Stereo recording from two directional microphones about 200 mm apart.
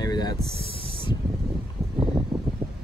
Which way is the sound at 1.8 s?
Centre (ahead or behind).